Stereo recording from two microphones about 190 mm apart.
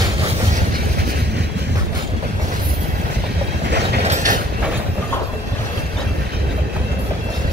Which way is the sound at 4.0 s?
40° right (ahead or behind).